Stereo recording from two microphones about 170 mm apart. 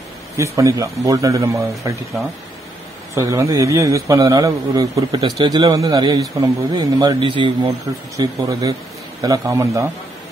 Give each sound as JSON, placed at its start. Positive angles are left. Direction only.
{"t": 0.4, "sound": "speech", "side_deg": -20}
{"t": 3.2, "sound": "speech", "side_deg": -15}